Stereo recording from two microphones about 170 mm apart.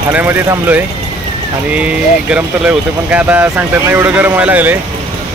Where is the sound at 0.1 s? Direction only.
10° right (ahead or behind).